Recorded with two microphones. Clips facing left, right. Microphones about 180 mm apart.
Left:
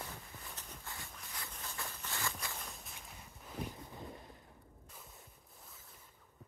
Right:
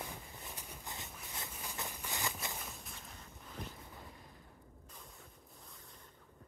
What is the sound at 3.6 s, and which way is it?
Boat, 5° left (ahead or behind).